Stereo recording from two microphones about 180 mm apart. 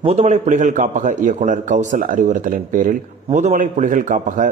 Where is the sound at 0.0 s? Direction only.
35° right (ahead or behind).